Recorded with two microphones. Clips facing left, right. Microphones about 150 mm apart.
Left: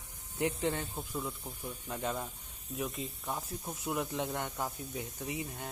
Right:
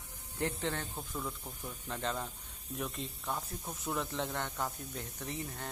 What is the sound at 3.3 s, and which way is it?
Speech, 15° left (ahead or behind).